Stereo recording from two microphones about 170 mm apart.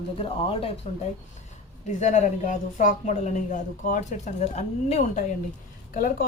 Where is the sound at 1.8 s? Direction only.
45° left (ahead or behind).